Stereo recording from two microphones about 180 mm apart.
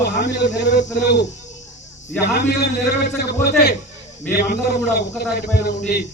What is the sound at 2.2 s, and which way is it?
Speech, 65° left (ahead or behind).